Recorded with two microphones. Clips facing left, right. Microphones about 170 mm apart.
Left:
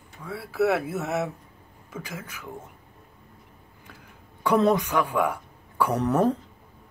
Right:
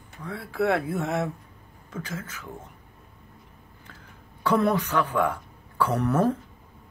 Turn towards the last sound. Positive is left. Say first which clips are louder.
# left 1 dB
turn(degrees=15)  # may be behind; listen again after turning